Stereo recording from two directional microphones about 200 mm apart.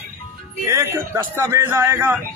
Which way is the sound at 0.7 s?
15° right (ahead or behind).